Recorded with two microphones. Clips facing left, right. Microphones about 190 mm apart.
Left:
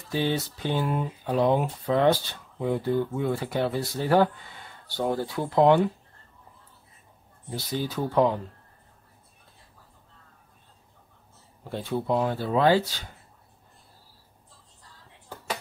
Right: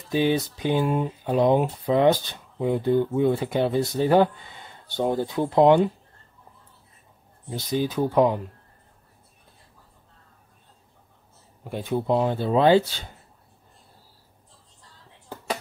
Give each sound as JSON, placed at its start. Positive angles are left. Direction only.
{"t": 0.1, "sound": "speech", "side_deg": -15}
{"t": 7.4, "sound": "speech", "side_deg": -20}
{"t": 11.6, "sound": "speech", "side_deg": -15}